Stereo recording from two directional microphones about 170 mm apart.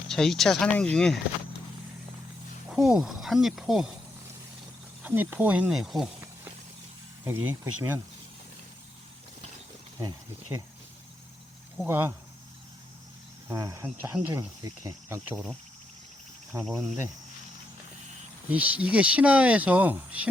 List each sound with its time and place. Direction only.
0.1 s speech: centre (ahead or behind)
2.6 s speech: 5° right (ahead or behind)
5.0 s speech: 10° right (ahead or behind)
7.3 s speech: 10° right (ahead or behind)
10.0 s speech: 20° right (ahead or behind)
11.8 s speech: 10° right (ahead or behind)
13.5 s speech: 20° right (ahead or behind)
16.6 s speech: centre (ahead or behind)
18.5 s speech: 10° right (ahead or behind)